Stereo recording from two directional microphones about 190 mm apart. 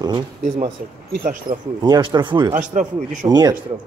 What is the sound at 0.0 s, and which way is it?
Speech, 25° right (ahead or behind).